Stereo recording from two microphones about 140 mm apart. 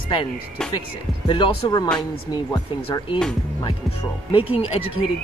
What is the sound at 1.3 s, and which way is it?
Speech, 35° left (ahead or behind).